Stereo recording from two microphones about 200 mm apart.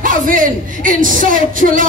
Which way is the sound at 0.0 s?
45° right (ahead or behind).